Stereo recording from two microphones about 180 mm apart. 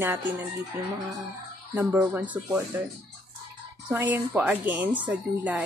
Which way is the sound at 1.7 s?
10° right (ahead or behind).